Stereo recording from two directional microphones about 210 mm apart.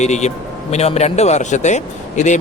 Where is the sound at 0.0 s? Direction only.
35° left (ahead or behind).